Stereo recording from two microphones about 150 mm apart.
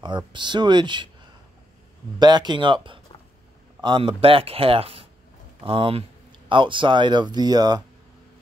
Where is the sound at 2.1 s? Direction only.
30° right (ahead or behind).